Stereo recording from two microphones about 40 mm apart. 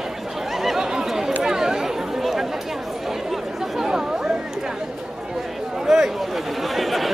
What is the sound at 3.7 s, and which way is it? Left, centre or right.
Chatter, centre.